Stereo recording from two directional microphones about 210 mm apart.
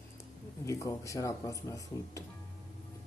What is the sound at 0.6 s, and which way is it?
Speech, 15° left (ahead or behind).